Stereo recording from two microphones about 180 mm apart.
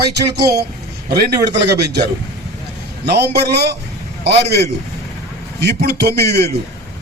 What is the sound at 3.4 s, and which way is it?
Speech, 65° right (ahead or behind).